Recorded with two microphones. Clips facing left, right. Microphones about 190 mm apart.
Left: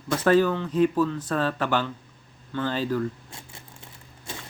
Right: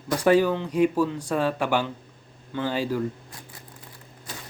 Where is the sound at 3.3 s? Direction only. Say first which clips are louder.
Even; 25° left (ahead or behind).